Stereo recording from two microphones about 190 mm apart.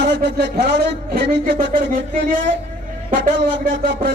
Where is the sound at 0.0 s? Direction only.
65° right (ahead or behind).